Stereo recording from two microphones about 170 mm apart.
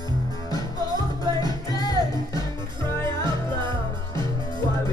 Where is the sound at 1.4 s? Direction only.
25° left (ahead or behind).